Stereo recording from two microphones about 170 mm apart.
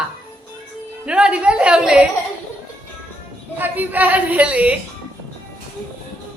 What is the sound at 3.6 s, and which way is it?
Speech, 10° right (ahead or behind).